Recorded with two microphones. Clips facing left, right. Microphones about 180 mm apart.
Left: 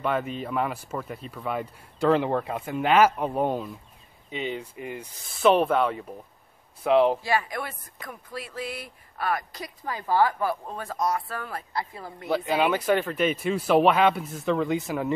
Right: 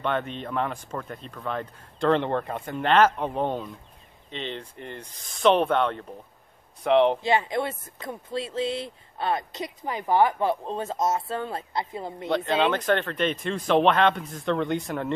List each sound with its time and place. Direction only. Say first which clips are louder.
0.0 s speech: left 1 dB; 5° left (ahead or behind)
7.2 s speech: right 3 dB; 25° right (ahead or behind)
12.3 s speech: even; 5° left (ahead or behind)